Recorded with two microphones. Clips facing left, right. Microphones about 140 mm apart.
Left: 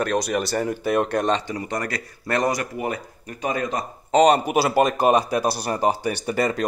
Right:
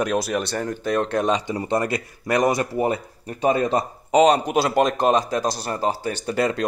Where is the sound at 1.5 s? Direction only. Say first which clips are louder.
Right 5 dB; 25° right (ahead or behind).